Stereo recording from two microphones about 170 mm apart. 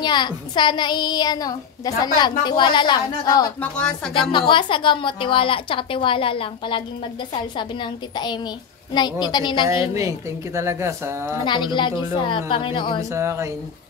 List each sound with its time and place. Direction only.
0.0 s a woman's voice: 25° left (ahead or behind)
3.7 s speech: 5° left (ahead or behind)
4.1 s a woman's voice: 30° left (ahead or behind)
9.9 s speech: 20° right (ahead or behind)
11.4 s a woman's voice: 25° left (ahead or behind)
13.1 s speech: 15° right (ahead or behind)